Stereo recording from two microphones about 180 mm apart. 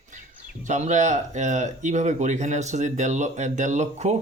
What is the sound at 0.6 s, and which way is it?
Speech, 40° right (ahead or behind).